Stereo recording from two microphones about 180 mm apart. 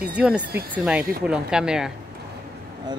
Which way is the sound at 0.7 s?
5° right (ahead or behind).